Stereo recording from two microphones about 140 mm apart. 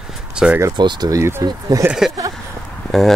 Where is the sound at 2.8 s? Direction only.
Centre (ahead or behind).